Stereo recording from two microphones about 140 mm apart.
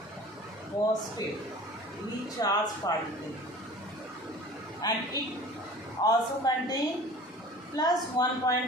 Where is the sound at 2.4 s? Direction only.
25° left (ahead or behind).